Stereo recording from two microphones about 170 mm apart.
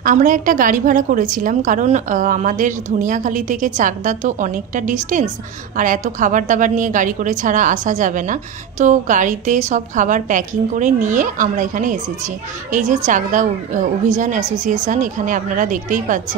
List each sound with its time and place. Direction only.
0.0 s a woman's voice: 50° right (ahead or behind)